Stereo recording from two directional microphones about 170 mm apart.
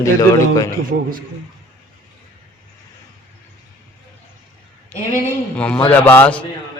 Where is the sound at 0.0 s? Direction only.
20° left (ahead or behind).